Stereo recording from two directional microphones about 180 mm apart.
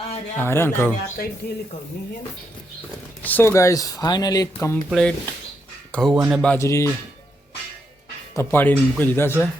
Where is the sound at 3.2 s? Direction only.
10° left (ahead or behind).